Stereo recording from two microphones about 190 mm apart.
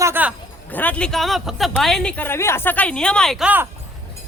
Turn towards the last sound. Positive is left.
turn(degrees=-5)  # may be behind; listen again after turning